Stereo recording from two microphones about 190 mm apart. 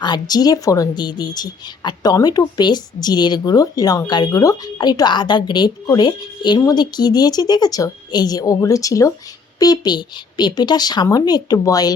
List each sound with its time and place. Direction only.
0.0 s speech: 20° left (ahead or behind)